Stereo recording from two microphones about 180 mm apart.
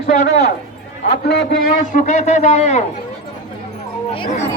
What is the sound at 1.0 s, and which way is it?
Speech, 60° left (ahead or behind).